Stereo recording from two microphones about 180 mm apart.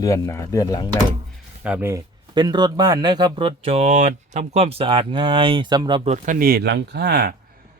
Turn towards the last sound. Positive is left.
turn(degrees=-60)  # may be behind; listen again after turning